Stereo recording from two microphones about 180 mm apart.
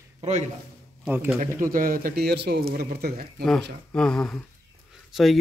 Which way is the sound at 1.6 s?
50° right (ahead or behind).